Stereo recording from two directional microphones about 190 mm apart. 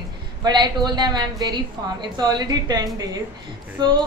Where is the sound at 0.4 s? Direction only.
20° right (ahead or behind).